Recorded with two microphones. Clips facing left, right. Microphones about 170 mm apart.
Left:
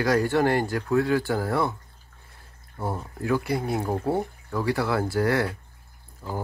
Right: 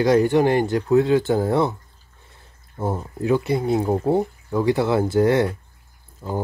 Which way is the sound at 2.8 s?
20° right (ahead or behind).